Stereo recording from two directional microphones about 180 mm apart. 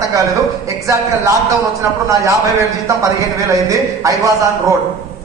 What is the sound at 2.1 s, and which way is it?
Speech, 15° right (ahead or behind).